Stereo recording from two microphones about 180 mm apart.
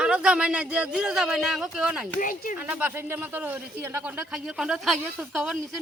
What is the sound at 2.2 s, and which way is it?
Speech, 50° left (ahead or behind).